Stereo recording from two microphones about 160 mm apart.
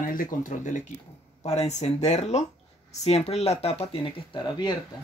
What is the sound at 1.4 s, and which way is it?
Speech, 45° left (ahead or behind).